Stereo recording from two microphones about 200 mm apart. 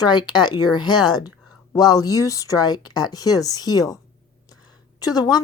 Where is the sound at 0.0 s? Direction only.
20° left (ahead or behind).